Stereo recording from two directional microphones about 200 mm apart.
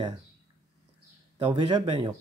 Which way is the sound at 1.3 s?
25° right (ahead or behind).